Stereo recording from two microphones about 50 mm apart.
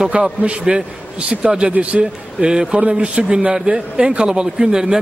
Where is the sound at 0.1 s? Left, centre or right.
Right.